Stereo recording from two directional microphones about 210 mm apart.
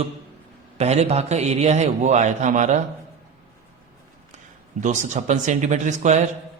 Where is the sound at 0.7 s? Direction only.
30° right (ahead or behind).